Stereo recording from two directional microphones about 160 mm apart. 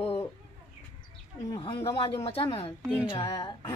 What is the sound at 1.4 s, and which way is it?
A woman's voice, 25° left (ahead or behind).